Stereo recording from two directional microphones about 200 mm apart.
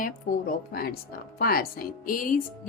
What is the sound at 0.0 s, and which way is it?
A woman's voice, 45° left (ahead or behind).